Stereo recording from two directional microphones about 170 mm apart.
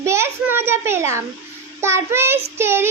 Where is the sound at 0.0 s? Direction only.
15° right (ahead or behind).